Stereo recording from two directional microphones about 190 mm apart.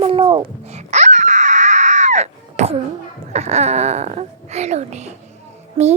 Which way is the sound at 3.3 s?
35° right (ahead or behind).